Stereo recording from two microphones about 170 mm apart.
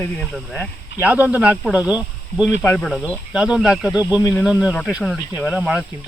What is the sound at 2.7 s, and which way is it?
Speech, 5° left (ahead or behind).